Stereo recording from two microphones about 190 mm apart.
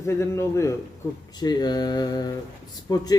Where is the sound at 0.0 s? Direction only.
15° left (ahead or behind).